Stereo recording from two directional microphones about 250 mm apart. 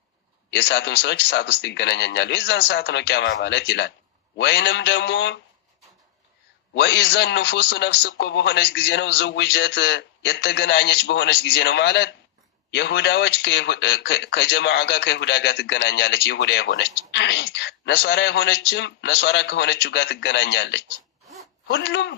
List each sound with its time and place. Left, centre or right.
0.5 s speech: left
6.7 s speech: left